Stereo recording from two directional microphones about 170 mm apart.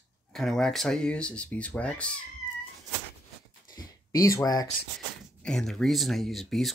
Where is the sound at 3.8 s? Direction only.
20° left (ahead or behind).